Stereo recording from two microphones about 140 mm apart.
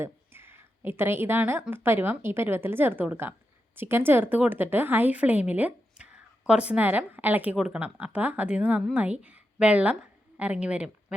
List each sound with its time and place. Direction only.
0.0 s a woman's voice: 15° right (ahead or behind)